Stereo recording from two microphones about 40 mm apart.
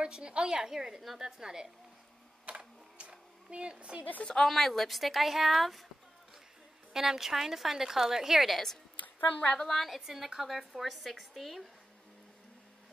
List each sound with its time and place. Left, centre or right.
0.0 s a woman's voice: right
2.4 s a sound: right
4.4 s a woman's voice: centre
6.9 s a woman's voice: centre
8.9 s a sound: left
9.6 s a woman's voice: centre